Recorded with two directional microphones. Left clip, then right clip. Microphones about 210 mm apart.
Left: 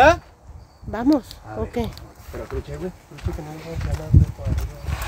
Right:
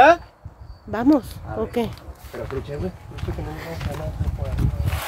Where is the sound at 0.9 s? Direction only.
5° right (ahead or behind).